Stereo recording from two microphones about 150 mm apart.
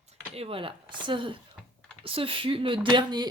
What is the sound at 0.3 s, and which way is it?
Speech, 40° right (ahead or behind).